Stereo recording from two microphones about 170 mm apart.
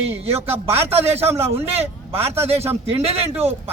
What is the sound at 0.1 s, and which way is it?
A man's voice, 35° right (ahead or behind).